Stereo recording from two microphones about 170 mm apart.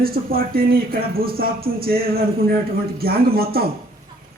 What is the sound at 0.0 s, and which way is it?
Speech, 60° right (ahead or behind).